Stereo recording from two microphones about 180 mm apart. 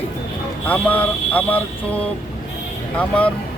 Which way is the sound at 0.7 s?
10° left (ahead or behind).